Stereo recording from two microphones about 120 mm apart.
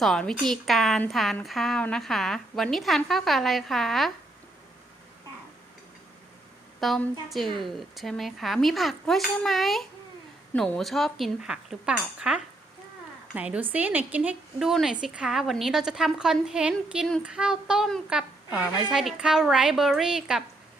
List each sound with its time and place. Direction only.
0.0 s a woman's voice: 5° left (ahead or behind)
6.7 s a woman's voice: centre (ahead or behind)
11.3 s cutlery: 5° right (ahead or behind)
14.7 s a woman's voice: centre (ahead or behind)